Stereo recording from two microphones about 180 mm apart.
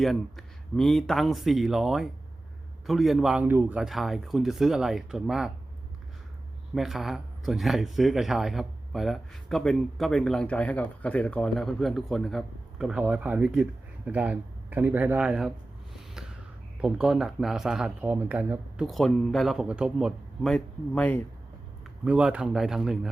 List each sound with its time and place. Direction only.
0.0 s speech: centre (ahead or behind)
6.7 s speech: centre (ahead or behind)
16.8 s speech: 5° right (ahead or behind)
18.9 s speech: centre (ahead or behind)
22.0 s speech: 5° right (ahead or behind)